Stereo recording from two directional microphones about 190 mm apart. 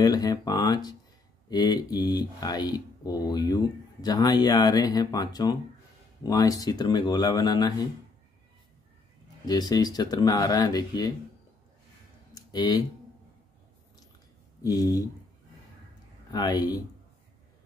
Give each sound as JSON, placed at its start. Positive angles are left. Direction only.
{"t": 0.0, "sound": "speech", "side_deg": 20}
{"t": 9.5, "sound": "speech", "side_deg": 20}
{"t": 12.4, "sound": "a sound", "side_deg": 20}
{"t": 14.6, "sound": "speech", "side_deg": 20}
{"t": 16.3, "sound": "speech", "side_deg": 20}